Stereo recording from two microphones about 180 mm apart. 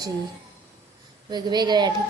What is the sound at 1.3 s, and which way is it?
Speech, 25° right (ahead or behind).